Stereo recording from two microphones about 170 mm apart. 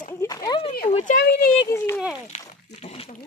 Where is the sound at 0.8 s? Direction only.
45° left (ahead or behind).